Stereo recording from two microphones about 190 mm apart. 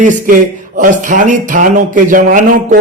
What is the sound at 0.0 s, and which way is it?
A man's voice, 40° right (ahead or behind).